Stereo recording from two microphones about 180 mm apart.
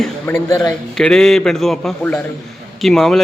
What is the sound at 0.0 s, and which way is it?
Speech, 5° left (ahead or behind).